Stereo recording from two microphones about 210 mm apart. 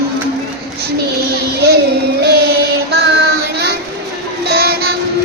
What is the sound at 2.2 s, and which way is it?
Child singing, 50° right (ahead or behind).